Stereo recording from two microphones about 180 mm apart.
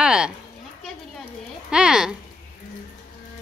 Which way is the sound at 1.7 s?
5° right (ahead or behind).